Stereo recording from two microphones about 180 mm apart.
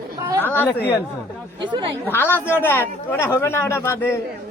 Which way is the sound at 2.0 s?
10° left (ahead or behind).